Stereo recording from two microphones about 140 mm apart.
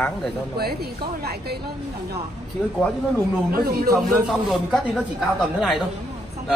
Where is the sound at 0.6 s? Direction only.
90° right.